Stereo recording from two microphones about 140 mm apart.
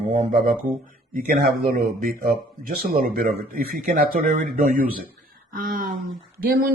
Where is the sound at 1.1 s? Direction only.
90° right.